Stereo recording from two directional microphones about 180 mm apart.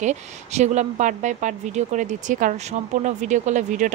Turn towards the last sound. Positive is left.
turn(degrees=-45)  # may be behind; listen again after turning